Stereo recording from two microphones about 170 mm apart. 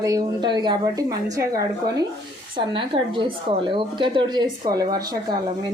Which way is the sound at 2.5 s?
30° right (ahead or behind).